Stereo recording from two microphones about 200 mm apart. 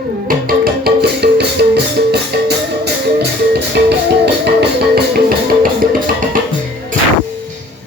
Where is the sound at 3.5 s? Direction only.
55° right (ahead or behind).